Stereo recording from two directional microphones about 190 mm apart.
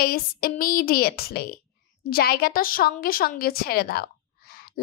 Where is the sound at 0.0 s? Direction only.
50° left (ahead or behind).